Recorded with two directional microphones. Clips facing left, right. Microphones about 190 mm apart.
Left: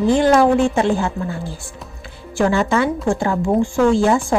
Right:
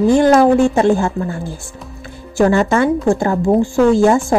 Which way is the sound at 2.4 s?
45° right (ahead or behind).